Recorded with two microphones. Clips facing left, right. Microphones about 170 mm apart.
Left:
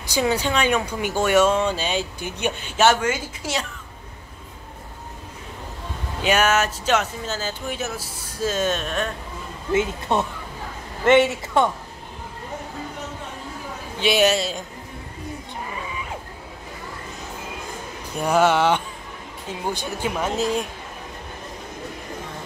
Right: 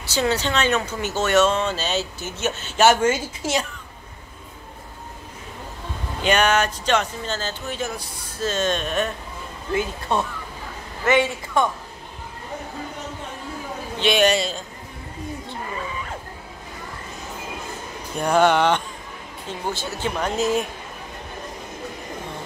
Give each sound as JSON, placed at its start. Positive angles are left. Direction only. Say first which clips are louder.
{"t": 0.0, "sound": "speech", "louder": "left 1 dB", "side_deg": 10}
{"t": 3.0, "sound": "a woman's voice", "louder": "right 4 dB", "side_deg": -25}
{"t": 6.2, "sound": "speech", "louder": "even", "side_deg": 5}
{"t": 9.7, "sound": "a man's voice", "louder": "left 2 dB", "side_deg": 20}
{"t": 13.9, "sound": "speech", "louder": "even", "side_deg": 5}
{"t": 18.1, "sound": "speech", "louder": "right 1 dB", "side_deg": 5}